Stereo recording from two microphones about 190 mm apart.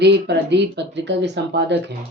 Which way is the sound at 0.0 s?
65° right (ahead or behind).